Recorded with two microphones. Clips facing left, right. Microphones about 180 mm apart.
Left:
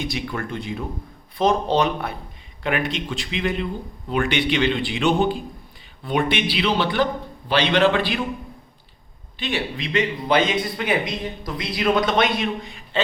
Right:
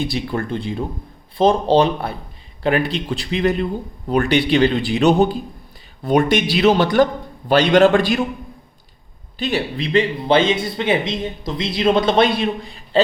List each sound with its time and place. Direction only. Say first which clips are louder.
0.0 s a man's voice: right 5 dB; 30° right (ahead or behind)
9.4 s speech: right 5 dB; 40° right (ahead or behind)